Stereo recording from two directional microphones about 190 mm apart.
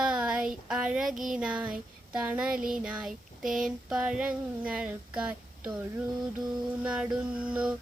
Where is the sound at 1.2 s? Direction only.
5° right (ahead or behind).